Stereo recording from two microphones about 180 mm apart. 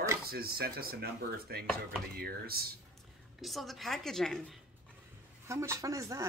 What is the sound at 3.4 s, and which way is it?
A woman's voice, centre (ahead or behind).